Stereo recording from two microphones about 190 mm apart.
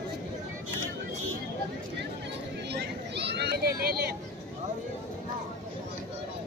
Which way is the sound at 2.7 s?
60° right (ahead or behind).